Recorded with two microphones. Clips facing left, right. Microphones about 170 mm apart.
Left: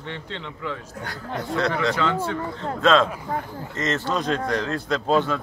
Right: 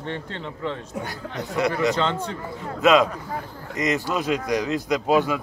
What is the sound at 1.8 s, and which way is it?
A man's voice, 20° right (ahead or behind).